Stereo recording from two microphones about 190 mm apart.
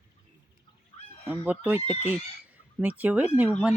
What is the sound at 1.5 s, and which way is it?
Speech, 10° right (ahead or behind).